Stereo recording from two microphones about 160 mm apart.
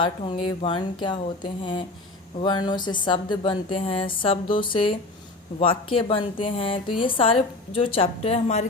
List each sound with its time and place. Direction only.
0.0 s a woman's voice: 30° left (ahead or behind)